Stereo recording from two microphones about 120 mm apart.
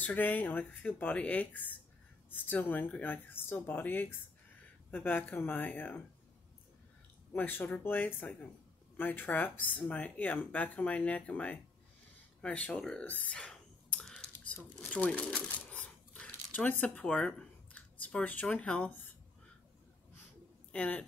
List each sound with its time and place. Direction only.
0.0 s speech: 15° left (ahead or behind)
7.3 s speech: 15° left (ahead or behind)
12.4 s a sound: 10° left (ahead or behind)
20.7 s speech: 10° left (ahead or behind)